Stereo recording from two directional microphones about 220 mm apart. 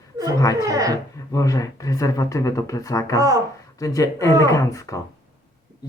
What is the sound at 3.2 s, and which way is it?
Speech, 15° right (ahead or behind).